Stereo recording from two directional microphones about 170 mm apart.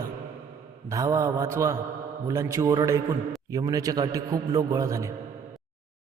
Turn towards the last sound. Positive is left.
turn(degrees=-20)  # may be behind; listen again after turning